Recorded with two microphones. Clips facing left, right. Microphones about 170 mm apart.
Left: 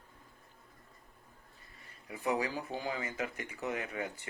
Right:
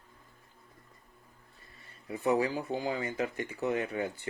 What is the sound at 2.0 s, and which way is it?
Speech, 35° right (ahead or behind).